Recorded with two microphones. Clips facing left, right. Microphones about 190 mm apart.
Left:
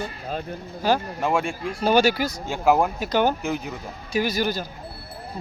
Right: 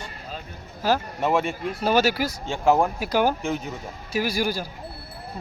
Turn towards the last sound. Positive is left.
turn(degrees=-10)  # may be behind; listen again after turning